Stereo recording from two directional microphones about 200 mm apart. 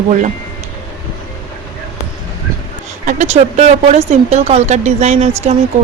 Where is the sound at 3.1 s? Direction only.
35° right (ahead or behind).